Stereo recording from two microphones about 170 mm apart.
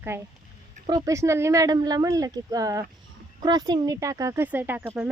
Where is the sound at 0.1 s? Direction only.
15° right (ahead or behind).